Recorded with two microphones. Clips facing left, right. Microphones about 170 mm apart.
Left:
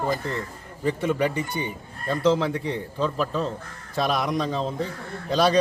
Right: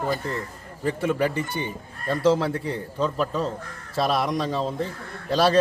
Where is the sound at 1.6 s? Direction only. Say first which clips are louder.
Even; 5° left (ahead or behind).